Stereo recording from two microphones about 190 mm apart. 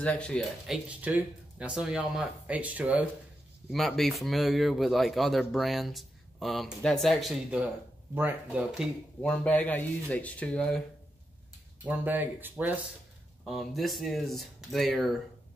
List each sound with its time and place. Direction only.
0.0 s speech: 5° left (ahead or behind)
11.8 s speech: 10° right (ahead or behind)
13.4 s speech: centre (ahead or behind)